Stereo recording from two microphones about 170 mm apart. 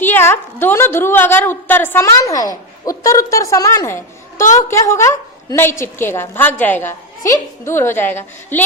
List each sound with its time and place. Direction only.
0.0 s a woman's voice: 10° left (ahead or behind)